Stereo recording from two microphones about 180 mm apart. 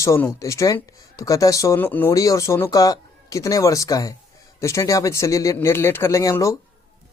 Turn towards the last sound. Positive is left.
turn(degrees=20)  # may be behind; listen again after turning